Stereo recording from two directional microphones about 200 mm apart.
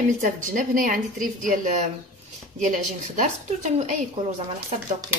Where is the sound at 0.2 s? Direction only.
40° right (ahead or behind).